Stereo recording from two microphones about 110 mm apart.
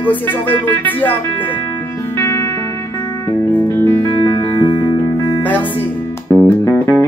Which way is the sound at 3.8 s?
25° left (ahead or behind).